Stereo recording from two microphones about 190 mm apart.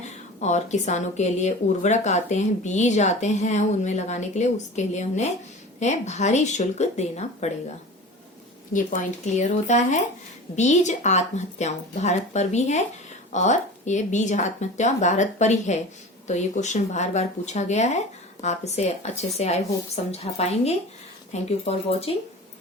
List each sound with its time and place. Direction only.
0.3 s speech: 35° left (ahead or behind)
8.7 s speech: 40° left (ahead or behind)